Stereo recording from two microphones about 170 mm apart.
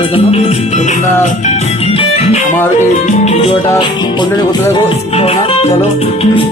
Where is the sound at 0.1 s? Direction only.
35° left (ahead or behind).